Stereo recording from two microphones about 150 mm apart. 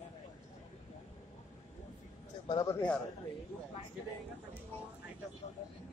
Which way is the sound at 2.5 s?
25° left (ahead or behind).